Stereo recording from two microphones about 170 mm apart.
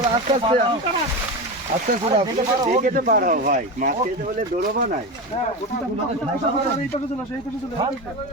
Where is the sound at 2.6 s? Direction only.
50° right (ahead or behind).